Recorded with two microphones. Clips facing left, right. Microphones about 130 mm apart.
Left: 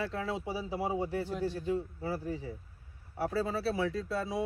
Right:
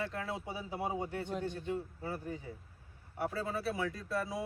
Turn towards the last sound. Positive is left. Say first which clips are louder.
# left 3 dB
turn(degrees=25)  # may be behind; listen again after turning